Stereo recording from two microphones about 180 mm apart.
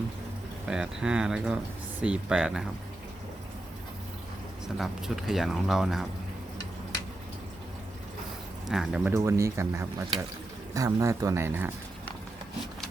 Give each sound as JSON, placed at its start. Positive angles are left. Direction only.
{"t": 0.7, "sound": "speech", "side_deg": -5}
{"t": 4.8, "sound": "speech", "side_deg": 0}
{"t": 8.6, "sound": "speech", "side_deg": 0}
{"t": 9.1, "sound": "speech", "side_deg": -15}